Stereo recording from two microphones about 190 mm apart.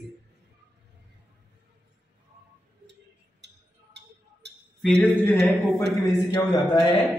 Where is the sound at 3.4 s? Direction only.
65° right (ahead or behind).